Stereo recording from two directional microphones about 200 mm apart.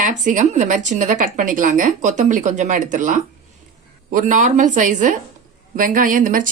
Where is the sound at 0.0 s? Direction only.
40° right (ahead or behind).